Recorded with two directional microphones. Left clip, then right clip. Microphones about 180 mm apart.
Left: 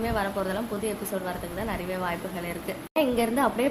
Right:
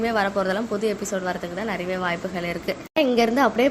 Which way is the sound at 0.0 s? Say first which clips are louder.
Right 6 dB; 20° right (ahead or behind).